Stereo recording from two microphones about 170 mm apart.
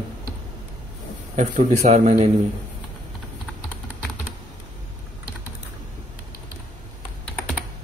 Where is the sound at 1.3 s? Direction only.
45° right (ahead or behind).